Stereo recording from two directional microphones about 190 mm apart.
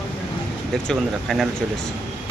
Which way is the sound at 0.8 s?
Centre (ahead or behind).